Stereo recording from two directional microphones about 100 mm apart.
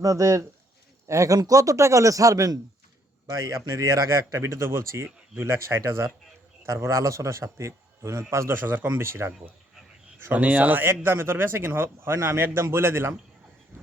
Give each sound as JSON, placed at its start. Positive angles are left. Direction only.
{"t": 0.0, "sound": "a man's voice", "side_deg": -35}